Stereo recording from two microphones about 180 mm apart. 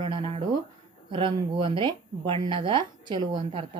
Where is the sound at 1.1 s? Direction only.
25° right (ahead or behind).